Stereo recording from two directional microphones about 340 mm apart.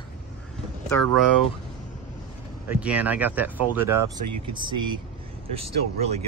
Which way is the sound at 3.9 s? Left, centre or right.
Right.